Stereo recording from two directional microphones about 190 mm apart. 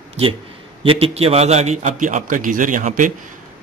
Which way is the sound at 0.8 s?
30° right (ahead or behind).